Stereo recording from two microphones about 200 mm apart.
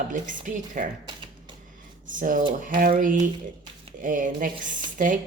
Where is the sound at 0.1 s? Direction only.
40° right (ahead or behind).